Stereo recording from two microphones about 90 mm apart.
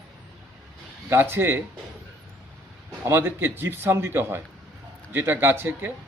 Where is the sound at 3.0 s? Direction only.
25° right (ahead or behind).